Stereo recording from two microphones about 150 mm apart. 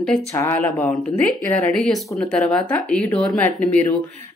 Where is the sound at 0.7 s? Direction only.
10° left (ahead or behind).